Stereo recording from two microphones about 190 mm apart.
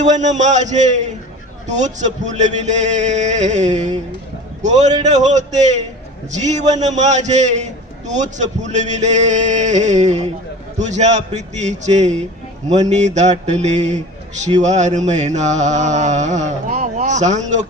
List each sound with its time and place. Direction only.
0.0 s a man's voice: 40° right (ahead or behind)